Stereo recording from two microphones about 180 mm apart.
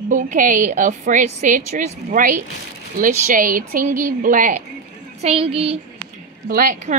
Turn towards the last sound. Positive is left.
turn(degrees=-45)  # may be behind; listen again after turning